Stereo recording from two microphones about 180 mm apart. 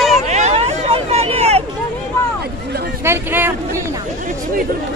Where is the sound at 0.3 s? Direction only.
40° right (ahead or behind).